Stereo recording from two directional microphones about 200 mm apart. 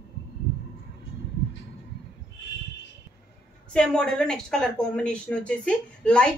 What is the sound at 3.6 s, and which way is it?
Speech, 5° left (ahead or behind).